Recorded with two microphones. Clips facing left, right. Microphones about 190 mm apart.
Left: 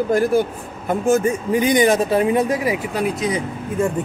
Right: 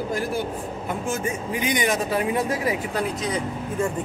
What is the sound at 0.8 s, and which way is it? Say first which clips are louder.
A man's voice: left 11 dB; 45° left (ahead or behind).